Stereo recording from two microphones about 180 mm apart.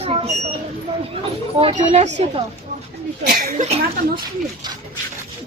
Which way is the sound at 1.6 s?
30° right (ahead or behind).